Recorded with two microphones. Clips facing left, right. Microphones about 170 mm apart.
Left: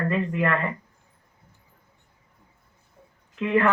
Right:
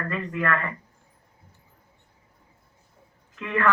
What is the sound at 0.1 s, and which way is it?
Speech, 25° left (ahead or behind).